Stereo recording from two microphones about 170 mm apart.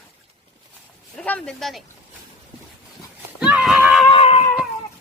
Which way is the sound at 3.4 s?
5° right (ahead or behind).